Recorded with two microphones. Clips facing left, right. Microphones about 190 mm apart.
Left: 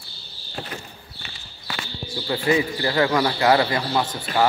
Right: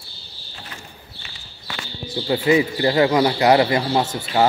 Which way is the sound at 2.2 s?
20° right (ahead or behind).